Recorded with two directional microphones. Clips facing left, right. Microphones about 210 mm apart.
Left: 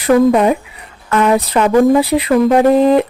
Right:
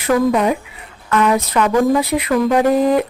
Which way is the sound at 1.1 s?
30° left (ahead or behind).